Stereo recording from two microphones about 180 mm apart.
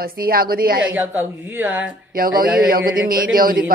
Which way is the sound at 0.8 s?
10° right (ahead or behind).